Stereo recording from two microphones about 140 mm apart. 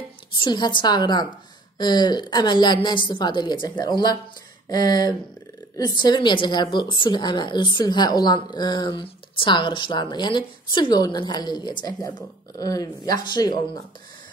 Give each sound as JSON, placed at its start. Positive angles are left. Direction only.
{"t": 0.4, "sound": "a woman's voice", "side_deg": 30}